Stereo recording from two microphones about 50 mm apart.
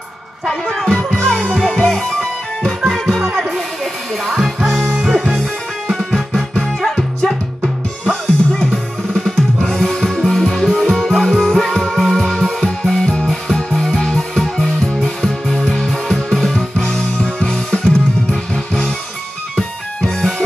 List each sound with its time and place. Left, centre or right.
0.5 s music: centre
4.6 s music: centre
8.0 s music: centre
20.0 s music: centre